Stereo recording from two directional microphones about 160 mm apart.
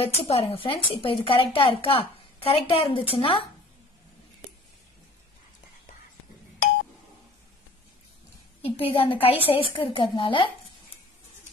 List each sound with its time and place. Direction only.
0.0 s a woman's voice: 40° left (ahead or behind)
8.6 s a woman's voice: 35° left (ahead or behind)